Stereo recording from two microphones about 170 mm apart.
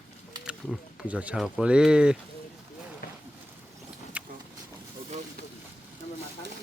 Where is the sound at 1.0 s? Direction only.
10° right (ahead or behind).